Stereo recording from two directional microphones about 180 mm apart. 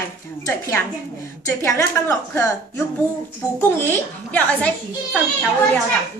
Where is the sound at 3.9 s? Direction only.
10° left (ahead or behind).